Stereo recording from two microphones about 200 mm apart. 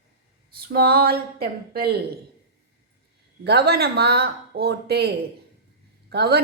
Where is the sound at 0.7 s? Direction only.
50° right (ahead or behind).